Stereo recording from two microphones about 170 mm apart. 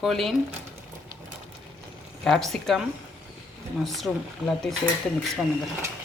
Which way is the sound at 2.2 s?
Centre (ahead or behind).